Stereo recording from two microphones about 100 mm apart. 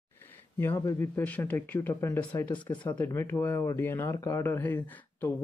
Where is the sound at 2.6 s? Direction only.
50° left (ahead or behind).